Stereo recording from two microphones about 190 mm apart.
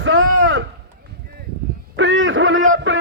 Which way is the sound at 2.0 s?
75° right (ahead or behind).